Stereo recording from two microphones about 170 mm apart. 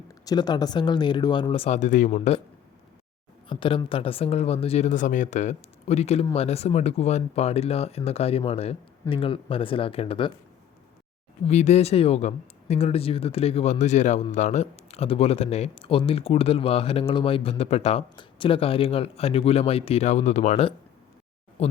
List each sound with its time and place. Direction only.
0.1 s speech: 25° left (ahead or behind)
3.5 s speech: 30° left (ahead or behind)
11.4 s speech: 40° left (ahead or behind)